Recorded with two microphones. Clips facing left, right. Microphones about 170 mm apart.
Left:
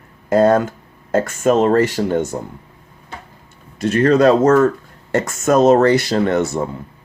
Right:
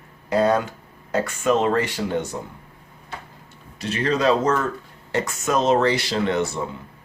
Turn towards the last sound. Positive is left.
turn(degrees=45)  # may be behind; listen again after turning